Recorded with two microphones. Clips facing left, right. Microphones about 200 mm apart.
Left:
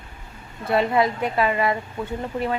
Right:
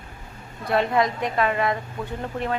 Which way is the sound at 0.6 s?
5° left (ahead or behind).